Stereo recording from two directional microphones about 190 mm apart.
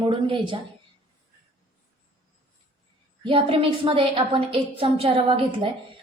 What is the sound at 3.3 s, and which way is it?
A woman's voice, 30° right (ahead or behind).